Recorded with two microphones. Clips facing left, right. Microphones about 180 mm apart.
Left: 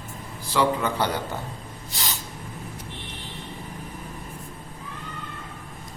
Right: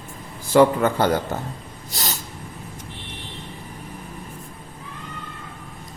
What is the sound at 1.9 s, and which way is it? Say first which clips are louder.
Spray: right 3 dB; 40° right (ahead or behind).